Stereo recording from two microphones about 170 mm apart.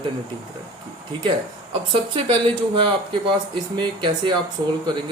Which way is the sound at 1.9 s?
30° right (ahead or behind).